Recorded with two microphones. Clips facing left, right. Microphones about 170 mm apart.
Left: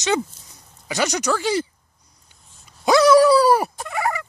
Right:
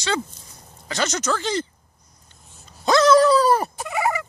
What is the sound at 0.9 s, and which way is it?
Speech, 15° left (ahead or behind).